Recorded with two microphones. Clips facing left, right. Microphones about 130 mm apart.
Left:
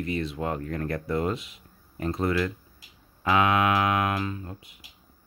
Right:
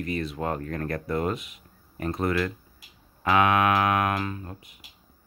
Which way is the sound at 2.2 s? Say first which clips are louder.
Even; 20° left (ahead or behind).